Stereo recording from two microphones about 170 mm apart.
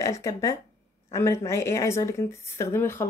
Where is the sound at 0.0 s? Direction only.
20° left (ahead or behind).